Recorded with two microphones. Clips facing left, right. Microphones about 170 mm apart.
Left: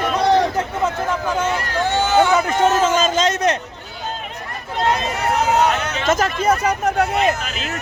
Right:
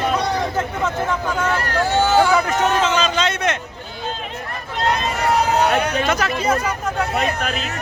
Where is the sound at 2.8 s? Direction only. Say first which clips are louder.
Left 2 dB; 45° left (ahead or behind).